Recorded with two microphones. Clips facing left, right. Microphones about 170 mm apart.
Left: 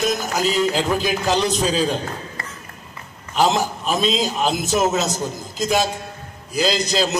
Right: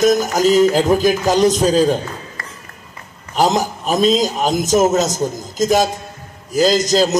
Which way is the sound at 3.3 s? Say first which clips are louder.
Right 2 dB; 40° right (ahead or behind).